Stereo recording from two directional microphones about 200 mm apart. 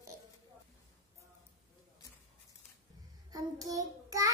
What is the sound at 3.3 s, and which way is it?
Child singing, 20° right (ahead or behind).